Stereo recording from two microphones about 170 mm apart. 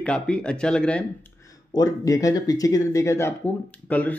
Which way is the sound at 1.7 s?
20° left (ahead or behind).